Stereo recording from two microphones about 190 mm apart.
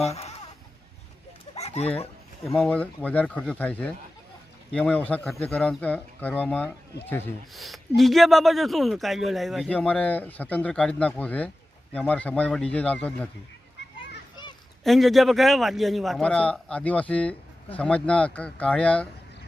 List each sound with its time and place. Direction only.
0.0 s speech: 30° left (ahead or behind)
1.5 s a sound: 35° left (ahead or behind)
2.4 s speech: centre (ahead or behind)
14.8 s a man's voice: centre (ahead or behind)